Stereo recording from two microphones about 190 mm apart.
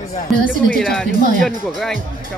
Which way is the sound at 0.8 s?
5° left (ahead or behind).